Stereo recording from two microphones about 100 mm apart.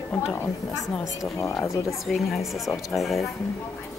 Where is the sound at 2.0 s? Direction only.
Centre (ahead or behind).